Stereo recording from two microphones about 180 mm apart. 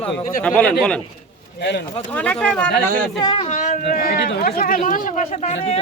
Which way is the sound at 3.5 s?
45° left (ahead or behind).